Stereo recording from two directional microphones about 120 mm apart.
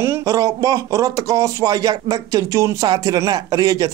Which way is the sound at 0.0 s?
25° right (ahead or behind).